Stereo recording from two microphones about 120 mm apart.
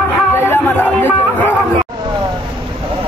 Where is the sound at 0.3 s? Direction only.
20° left (ahead or behind).